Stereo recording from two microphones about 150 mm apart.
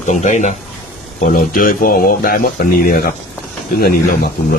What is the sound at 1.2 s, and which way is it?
Speech, 65° left (ahead or behind).